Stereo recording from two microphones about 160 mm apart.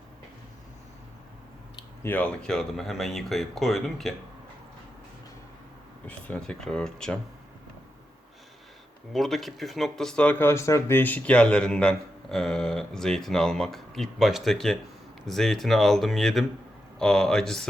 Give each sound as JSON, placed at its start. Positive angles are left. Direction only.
{"t": 2.0, "sound": "speech", "side_deg": 10}
{"t": 6.1, "sound": "speech", "side_deg": 10}
{"t": 9.1, "sound": "speech", "side_deg": 0}